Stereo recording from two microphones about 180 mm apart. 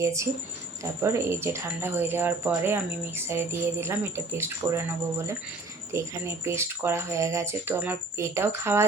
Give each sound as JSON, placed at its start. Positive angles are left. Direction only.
{"t": 0.0, "sound": "speech", "side_deg": -15}